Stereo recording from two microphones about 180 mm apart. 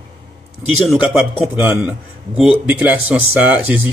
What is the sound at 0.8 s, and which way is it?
Speech, 5° right (ahead or behind).